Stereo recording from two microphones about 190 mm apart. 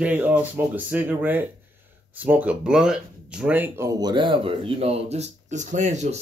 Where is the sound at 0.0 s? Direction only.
10° right (ahead or behind).